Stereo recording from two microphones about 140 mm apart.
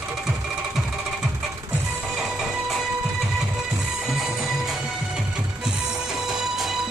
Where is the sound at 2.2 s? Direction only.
Centre (ahead or behind).